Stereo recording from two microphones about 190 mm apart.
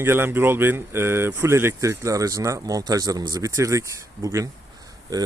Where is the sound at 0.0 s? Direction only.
10° right (ahead or behind).